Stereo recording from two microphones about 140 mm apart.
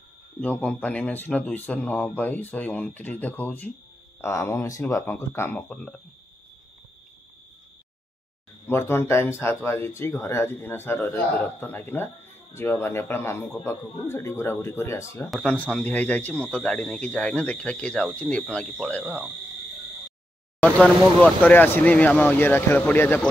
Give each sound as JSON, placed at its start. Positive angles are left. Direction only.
{"t": 0.4, "sound": "speech", "side_deg": 10}
{"t": 8.6, "sound": "speech", "side_deg": 15}
{"t": 20.6, "sound": "speech", "side_deg": 10}